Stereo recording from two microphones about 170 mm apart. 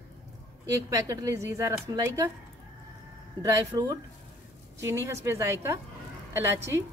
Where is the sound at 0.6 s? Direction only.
20° right (ahead or behind).